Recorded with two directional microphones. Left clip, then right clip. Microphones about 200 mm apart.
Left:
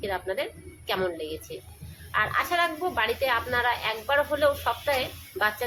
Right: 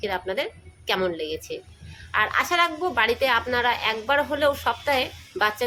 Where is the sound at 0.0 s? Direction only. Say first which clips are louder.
Right 3 dB; 35° right (ahead or behind).